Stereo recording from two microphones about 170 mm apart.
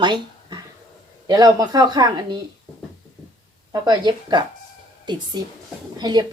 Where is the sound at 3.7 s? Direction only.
25° right (ahead or behind).